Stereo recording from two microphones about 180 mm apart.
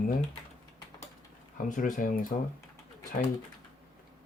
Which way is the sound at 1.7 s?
50° left (ahead or behind).